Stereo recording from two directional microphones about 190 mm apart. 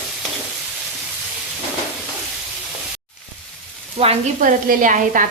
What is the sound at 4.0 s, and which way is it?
Speech, 35° right (ahead or behind).